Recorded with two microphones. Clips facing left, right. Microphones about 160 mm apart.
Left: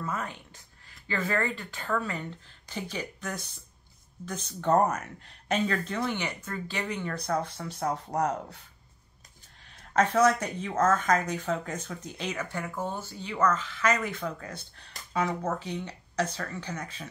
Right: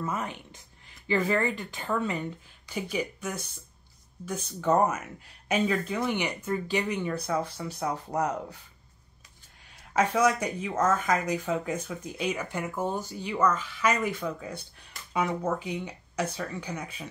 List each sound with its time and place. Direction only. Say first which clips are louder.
0.0 s speech: right 2 dB; 20° right (ahead or behind); by 8.6 s 5° right (ahead or behind)
9.7 s speech: left 1 dB; 10° right (ahead or behind)